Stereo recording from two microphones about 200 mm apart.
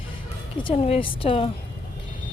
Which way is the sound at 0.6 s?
30° left (ahead or behind).